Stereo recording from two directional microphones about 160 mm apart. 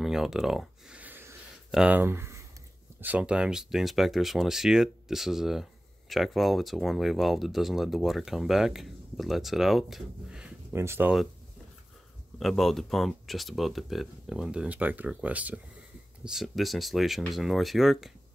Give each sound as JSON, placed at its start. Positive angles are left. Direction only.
{"t": 0.0, "sound": "a sound", "side_deg": -5}
{"t": 1.7, "sound": "speech", "side_deg": -5}
{"t": 10.7, "sound": "speech", "side_deg": -15}
{"t": 12.4, "sound": "speech", "side_deg": 0}